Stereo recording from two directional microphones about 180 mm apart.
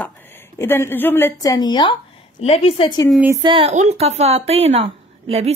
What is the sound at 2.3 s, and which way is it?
Speech, 40° left (ahead or behind).